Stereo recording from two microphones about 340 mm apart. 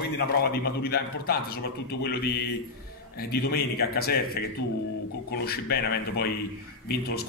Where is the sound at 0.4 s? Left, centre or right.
Left.